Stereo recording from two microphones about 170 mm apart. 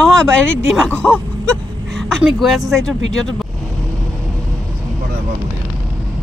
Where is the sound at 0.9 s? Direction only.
5° left (ahead or behind).